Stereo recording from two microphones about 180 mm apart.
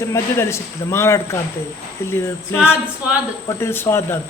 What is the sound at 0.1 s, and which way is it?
A man's voice, 15° left (ahead or behind).